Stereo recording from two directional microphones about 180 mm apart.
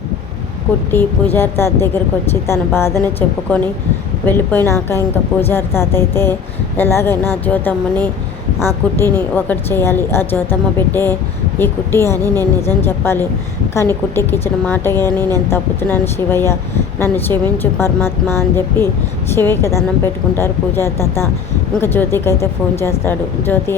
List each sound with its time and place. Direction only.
0.9 s a woman's voice: 10° left (ahead or behind)
12.2 s a woman's voice: 20° right (ahead or behind)
12.6 s a woman's voice: 15° left (ahead or behind)